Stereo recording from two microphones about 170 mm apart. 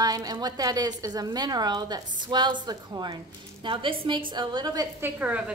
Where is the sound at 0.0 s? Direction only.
20° right (ahead or behind).